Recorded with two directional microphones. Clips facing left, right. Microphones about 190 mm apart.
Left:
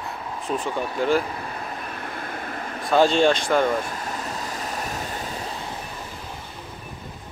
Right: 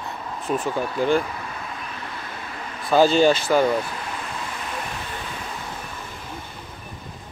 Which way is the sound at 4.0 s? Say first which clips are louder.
Left 1 dB; 40° left (ahead or behind).